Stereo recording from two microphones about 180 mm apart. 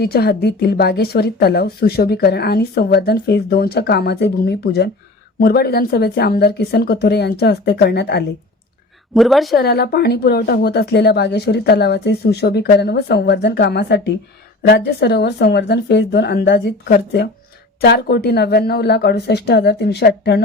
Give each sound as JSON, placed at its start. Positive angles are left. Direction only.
{"t": 0.0, "sound": "a woman's voice", "side_deg": 60}
{"t": 9.1, "sound": "a woman's voice", "side_deg": 0}
{"t": 9.6, "sound": "a woman's voice", "side_deg": 65}
{"t": 17.7, "sound": "a woman's voice", "side_deg": 60}